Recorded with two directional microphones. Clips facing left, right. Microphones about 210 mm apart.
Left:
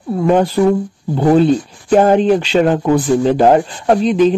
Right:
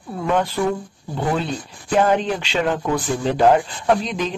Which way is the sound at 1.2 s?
45° left (ahead or behind).